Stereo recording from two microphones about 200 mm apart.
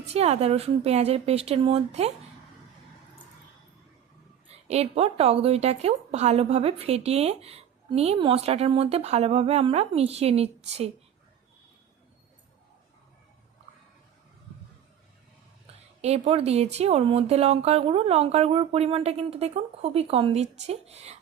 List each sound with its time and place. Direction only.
0.0 s a woman's voice: 30° right (ahead or behind)
4.5 s a woman's voice: 30° right (ahead or behind)
15.6 s a woman's voice: 30° right (ahead or behind)